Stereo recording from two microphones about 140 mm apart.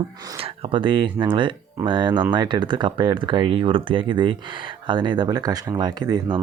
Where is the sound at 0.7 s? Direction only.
35° right (ahead or behind).